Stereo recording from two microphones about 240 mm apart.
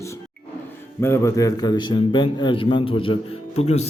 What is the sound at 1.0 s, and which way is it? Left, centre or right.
A man's voice, centre.